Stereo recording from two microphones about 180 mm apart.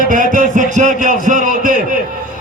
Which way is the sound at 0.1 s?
45° right (ahead or behind).